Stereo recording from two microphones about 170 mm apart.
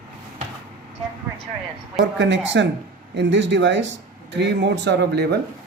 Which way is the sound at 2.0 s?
90° right.